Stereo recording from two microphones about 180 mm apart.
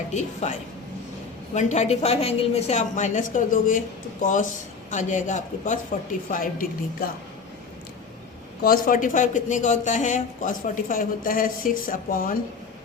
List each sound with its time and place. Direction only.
0.1 s a woman's voice: 40° left (ahead or behind)
1.5 s a woman's voice: 40° left (ahead or behind)
8.6 s a woman's voice: 50° left (ahead or behind)